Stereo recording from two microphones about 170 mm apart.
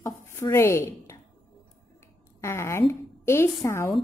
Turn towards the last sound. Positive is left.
turn(degrees=15)  # may be behind; listen again after turning